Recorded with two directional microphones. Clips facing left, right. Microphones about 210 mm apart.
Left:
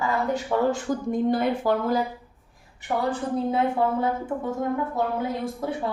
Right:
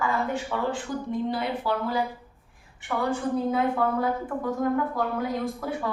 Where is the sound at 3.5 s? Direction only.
25° left (ahead or behind).